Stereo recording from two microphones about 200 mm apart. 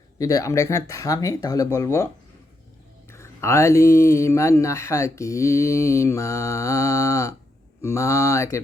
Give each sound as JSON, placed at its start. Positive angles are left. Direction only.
{"t": 0.2, "sound": "speech", "side_deg": 15}
{"t": 3.1, "sound": "speech", "side_deg": 15}